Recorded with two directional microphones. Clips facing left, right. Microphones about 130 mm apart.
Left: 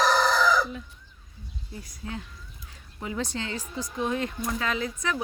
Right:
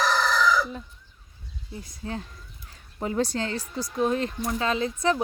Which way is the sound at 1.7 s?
25° right (ahead or behind).